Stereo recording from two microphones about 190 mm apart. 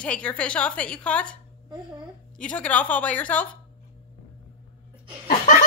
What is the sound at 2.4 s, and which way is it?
A woman's voice, 5° left (ahead or behind).